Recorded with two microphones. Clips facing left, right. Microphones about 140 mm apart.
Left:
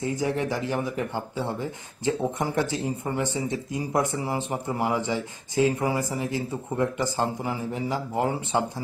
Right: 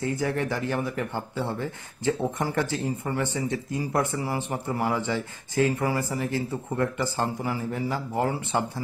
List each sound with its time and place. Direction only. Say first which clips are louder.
0.0 s a man's voice: left 1 dB; 15° left (ahead or behind)